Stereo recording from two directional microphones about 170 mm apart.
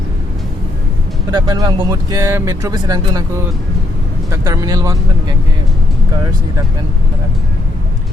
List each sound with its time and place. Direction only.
1.3 s speech: 25° right (ahead or behind)
4.3 s speech: 15° right (ahead or behind)